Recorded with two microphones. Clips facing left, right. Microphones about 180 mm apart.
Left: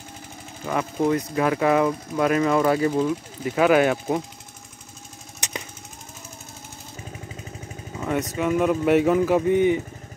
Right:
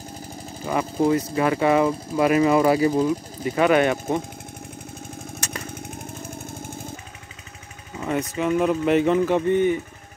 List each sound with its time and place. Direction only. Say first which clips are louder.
0.7 s speech: right 2 dB; 5° right (ahead or behind)
3.4 s speech: even; 5° left (ahead or behind)
5.4 s vehicle: left 2 dB; 15° left (ahead or behind)
8.0 s speech: even; centre (ahead or behind)